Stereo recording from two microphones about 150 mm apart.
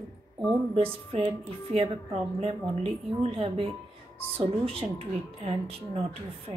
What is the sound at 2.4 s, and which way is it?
Speech, 40° right (ahead or behind).